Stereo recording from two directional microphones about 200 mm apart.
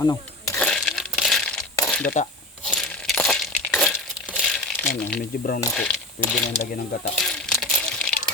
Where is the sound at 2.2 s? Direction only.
35° left (ahead or behind).